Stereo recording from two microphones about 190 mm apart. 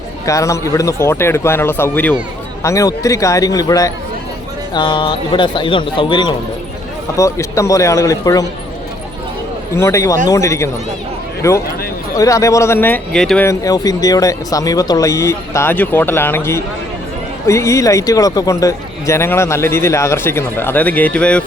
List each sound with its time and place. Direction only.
0.3 s speech: 15° left (ahead or behind)
9.7 s speech: 15° left (ahead or behind)
12.1 s speech: 15° left (ahead or behind)